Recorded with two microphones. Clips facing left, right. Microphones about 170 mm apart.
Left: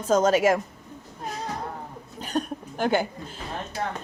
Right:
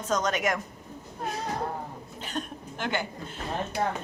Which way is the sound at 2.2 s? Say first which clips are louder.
Left 7 dB; 40° left (ahead or behind).